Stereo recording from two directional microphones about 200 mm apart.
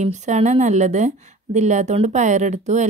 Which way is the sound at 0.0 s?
35° right (ahead or behind).